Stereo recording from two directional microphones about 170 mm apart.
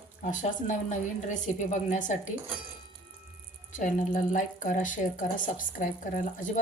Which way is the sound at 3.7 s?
45° left (ahead or behind).